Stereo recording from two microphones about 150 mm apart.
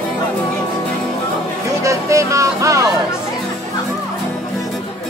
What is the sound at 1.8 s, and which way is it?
Music, 20° right (ahead or behind).